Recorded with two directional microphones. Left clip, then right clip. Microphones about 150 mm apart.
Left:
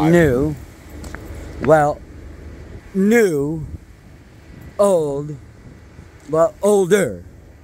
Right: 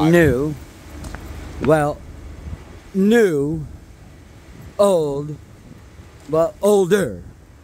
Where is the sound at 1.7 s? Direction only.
15° right (ahead or behind).